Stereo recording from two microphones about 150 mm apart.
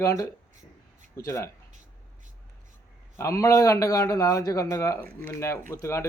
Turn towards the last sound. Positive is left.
turn(degrees=20)  # may be behind; listen again after turning